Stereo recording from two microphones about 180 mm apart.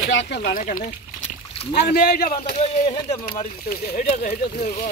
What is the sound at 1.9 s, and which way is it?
Speech, 60° left (ahead or behind).